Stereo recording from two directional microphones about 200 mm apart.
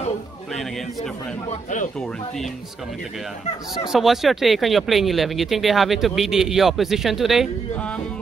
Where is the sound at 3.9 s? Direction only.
Centre (ahead or behind).